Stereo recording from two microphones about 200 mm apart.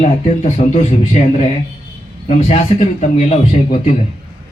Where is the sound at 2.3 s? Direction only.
35° left (ahead or behind).